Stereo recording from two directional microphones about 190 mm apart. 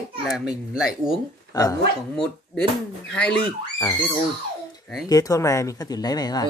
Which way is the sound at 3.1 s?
5° left (ahead or behind).